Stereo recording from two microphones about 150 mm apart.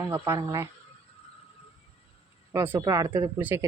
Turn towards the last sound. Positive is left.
turn(degrees=-15)  # may be behind; listen again after turning